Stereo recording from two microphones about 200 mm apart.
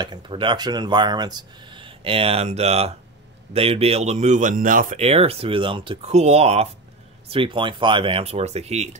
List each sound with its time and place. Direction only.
0.0 s speech: 25° right (ahead or behind)